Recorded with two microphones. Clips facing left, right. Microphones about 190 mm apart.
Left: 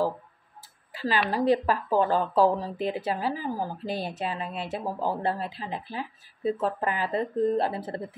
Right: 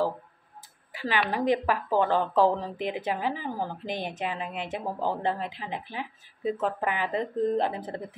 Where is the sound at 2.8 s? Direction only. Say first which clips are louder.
Left 2 dB; 20° right (ahead or behind).